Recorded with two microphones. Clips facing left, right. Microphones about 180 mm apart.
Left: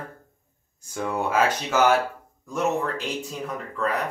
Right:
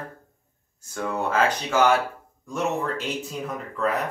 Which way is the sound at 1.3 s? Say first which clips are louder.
Even; 5° left (ahead or behind).